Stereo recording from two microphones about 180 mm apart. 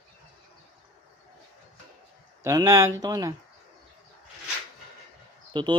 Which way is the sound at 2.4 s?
15° right (ahead or behind).